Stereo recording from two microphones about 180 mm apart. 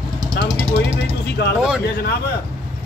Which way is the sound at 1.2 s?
65° left (ahead or behind).